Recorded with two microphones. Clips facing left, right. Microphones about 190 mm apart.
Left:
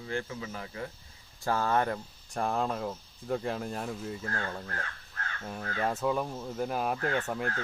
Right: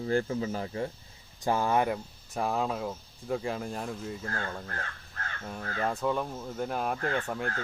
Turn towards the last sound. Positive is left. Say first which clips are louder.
# even
turn(degrees=5)  # may be behind; listen again after turning